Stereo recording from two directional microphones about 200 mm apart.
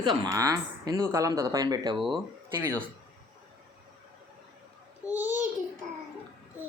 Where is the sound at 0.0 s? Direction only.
20° right (ahead or behind).